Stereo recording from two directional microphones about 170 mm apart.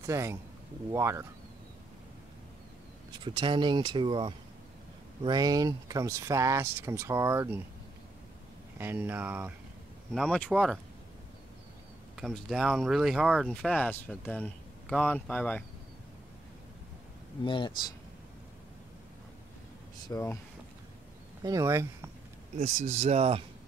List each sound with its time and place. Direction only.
0.0 s speech: 15° right (ahead or behind)
3.3 s speech: 30° right (ahead or behind)
8.7 s speech: 10° right (ahead or behind)
10.1 s speech: centre (ahead or behind)
12.2 s speech: centre (ahead or behind)
17.5 s speech: 25° left (ahead or behind)
20.1 s speech: 20° left (ahead or behind)
21.5 s speech: 20° right (ahead or behind)
22.6 s speech: 40° right (ahead or behind)